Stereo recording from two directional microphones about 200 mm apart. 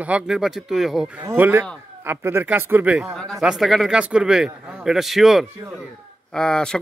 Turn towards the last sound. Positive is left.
turn(degrees=5)  # may be behind; listen again after turning